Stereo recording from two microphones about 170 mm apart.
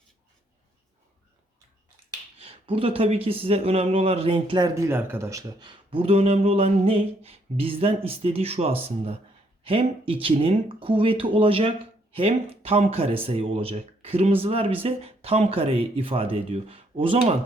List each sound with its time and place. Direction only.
2.4 s speech: 30° right (ahead or behind)